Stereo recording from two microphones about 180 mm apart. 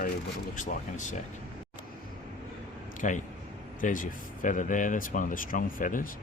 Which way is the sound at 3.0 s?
45° left (ahead or behind).